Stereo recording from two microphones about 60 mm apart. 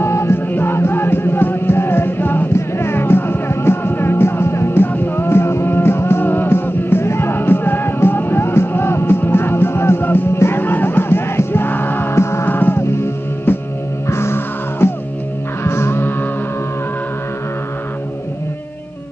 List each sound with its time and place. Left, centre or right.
0.0 s music: left
0.5 s music: left
12.4 s music: left
14.0 s music: left